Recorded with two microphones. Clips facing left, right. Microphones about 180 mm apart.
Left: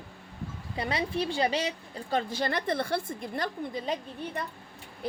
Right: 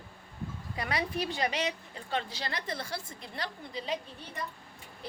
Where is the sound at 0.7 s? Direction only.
25° left (ahead or behind); by 4.4 s 50° left (ahead or behind).